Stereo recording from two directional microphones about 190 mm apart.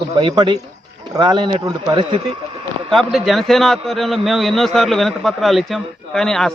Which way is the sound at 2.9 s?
Centre (ahead or behind).